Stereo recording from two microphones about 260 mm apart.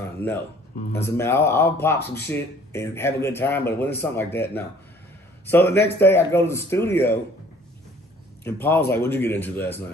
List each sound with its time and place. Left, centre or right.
0.2 s speech: centre
5.5 s speech: centre
8.5 s speech: centre